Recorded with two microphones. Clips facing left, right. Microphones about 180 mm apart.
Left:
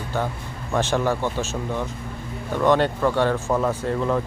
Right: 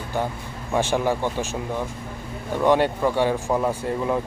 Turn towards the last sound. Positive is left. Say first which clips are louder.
# left 1 dB
turn(degrees=-10)  # may be behind; listen again after turning